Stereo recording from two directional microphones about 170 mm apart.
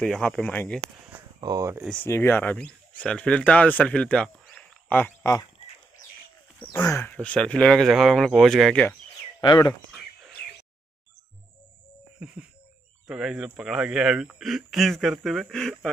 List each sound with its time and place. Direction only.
0.0 s speech: centre (ahead or behind)
1.4 s speech: 20° right (ahead or behind)
1.9 s speech: 10° left (ahead or behind)
6.6 s speech: 15° left (ahead or behind)
9.4 s speech: 25° left (ahead or behind)
13.0 s speech: 5° right (ahead or behind)